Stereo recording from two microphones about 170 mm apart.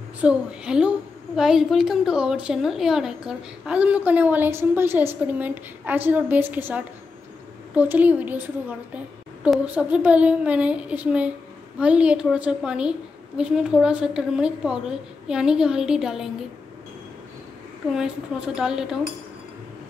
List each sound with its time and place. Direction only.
0.2 s a woman's voice: 5° right (ahead or behind)
17.9 s a woman's voice: 5° right (ahead or behind)